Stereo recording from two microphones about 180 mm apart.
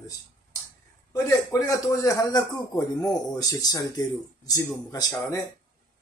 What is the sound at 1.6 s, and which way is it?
Speech, 20° left (ahead or behind).